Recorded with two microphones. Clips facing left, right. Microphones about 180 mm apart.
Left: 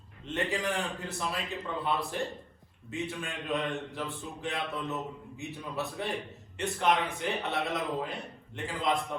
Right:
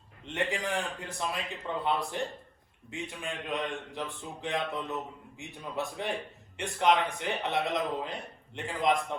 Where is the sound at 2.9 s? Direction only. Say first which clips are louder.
Left 2 dB; 15° right (ahead or behind).